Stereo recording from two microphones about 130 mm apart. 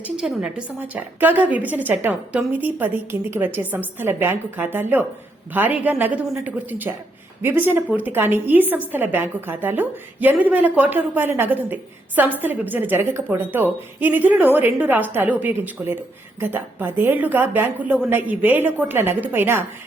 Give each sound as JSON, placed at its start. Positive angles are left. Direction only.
{"t": 0.0, "sound": "a woman's voice", "side_deg": -5}